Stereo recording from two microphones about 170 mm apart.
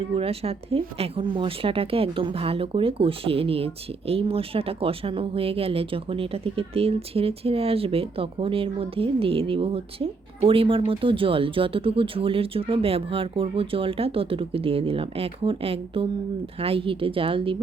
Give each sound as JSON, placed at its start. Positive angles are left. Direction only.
{"t": 0.1, "sound": "speech", "side_deg": -35}